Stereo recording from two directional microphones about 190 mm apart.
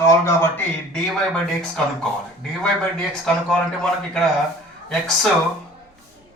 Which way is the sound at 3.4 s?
5° left (ahead or behind).